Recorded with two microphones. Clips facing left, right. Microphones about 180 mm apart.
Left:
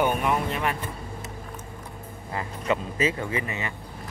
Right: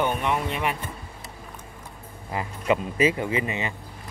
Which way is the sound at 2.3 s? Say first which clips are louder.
Right 3 dB; 15° right (ahead or behind).